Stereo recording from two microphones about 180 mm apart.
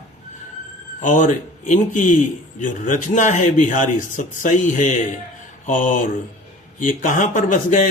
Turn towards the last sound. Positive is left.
turn(degrees=45)  # may be behind; listen again after turning